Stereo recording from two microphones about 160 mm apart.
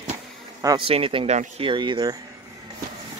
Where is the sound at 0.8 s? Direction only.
35° right (ahead or behind).